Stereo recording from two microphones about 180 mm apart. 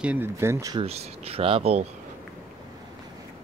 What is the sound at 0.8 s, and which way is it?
Speech, 35° right (ahead or behind).